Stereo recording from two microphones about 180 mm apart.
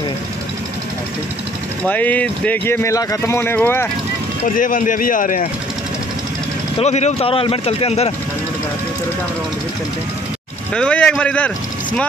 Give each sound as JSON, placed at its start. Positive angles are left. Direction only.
{"t": 1.9, "sound": "speech", "side_deg": 10}
{"t": 4.4, "sound": "speech", "side_deg": 50}
{"t": 6.8, "sound": "speech", "side_deg": 40}
{"t": 10.7, "sound": "speech", "side_deg": 5}